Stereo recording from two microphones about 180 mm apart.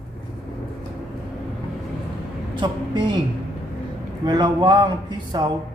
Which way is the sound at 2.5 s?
25° right (ahead or behind).